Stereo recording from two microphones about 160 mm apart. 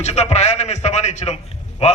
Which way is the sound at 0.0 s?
45° left (ahead or behind).